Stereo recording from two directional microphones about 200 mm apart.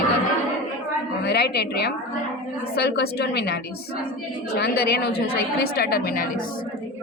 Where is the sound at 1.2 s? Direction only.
55° left (ahead or behind).